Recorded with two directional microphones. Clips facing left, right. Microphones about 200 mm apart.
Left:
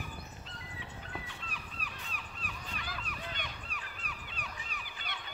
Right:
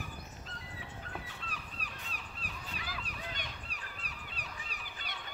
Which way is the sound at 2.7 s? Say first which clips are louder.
Even; 5° right (ahead or behind).